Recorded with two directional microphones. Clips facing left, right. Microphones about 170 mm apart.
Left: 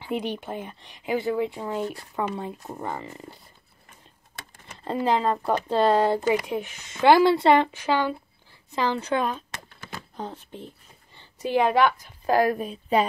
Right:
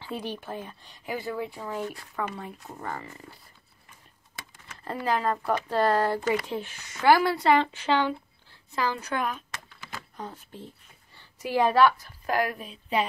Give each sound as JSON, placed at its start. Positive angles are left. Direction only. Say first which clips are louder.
{"t": 0.0, "sound": "speech", "louder": "left 5 dB", "side_deg": 20}
{"t": 4.8, "sound": "speech", "louder": "left 4 dB", "side_deg": 25}
{"t": 8.7, "sound": "a woman's voice", "louder": "left 4 dB", "side_deg": 25}
{"t": 12.3, "sound": "a woman's voice", "louder": "left 6 dB", "side_deg": 35}